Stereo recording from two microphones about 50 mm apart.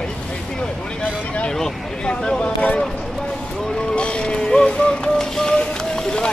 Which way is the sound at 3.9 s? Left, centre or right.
Left.